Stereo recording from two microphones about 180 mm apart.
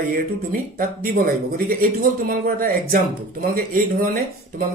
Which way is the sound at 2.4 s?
55° right (ahead or behind).